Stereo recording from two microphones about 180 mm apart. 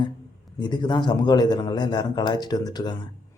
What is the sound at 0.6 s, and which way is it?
Speech, 25° left (ahead or behind).